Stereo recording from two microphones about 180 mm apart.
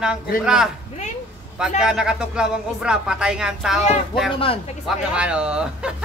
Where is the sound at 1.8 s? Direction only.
5° right (ahead or behind).